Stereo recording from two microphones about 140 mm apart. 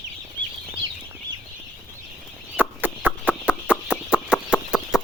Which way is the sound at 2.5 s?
10° right (ahead or behind).